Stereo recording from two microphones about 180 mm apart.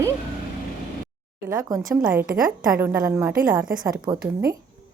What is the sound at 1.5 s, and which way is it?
Speech, 20° right (ahead or behind).